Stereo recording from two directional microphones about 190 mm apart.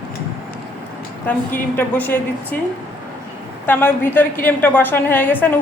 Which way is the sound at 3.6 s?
10° left (ahead or behind).